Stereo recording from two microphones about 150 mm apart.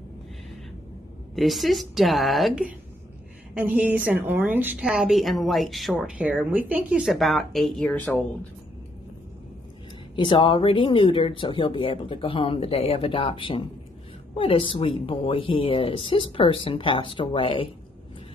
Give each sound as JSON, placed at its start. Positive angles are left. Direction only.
{"t": 1.3, "sound": "a woman's voice", "side_deg": 0}
{"t": 3.5, "sound": "a woman's voice", "side_deg": -10}
{"t": 10.1, "sound": "speech", "side_deg": 30}